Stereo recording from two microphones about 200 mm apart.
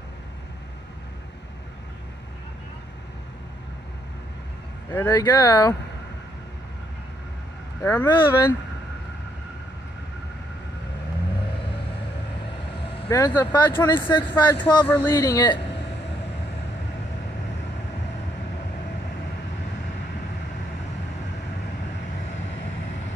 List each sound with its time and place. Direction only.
5.1 s speech: 20° left (ahead or behind)
7.8 s speech: 10° left (ahead or behind)
13.1 s speech: 15° left (ahead or behind)
13.9 s speech: 25° left (ahead or behind)
14.3 s speech: 10° left (ahead or behind)